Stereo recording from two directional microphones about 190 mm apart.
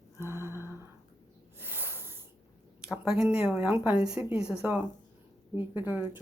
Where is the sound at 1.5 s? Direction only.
10° right (ahead or behind).